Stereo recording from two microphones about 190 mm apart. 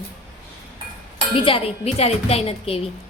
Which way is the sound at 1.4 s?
25° left (ahead or behind).